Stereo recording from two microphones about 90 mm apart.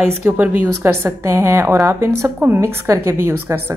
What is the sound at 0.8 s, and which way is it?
A woman's voice, 30° right (ahead or behind).